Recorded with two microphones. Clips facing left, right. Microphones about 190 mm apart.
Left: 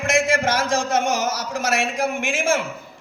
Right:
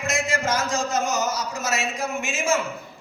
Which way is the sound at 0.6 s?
90° left.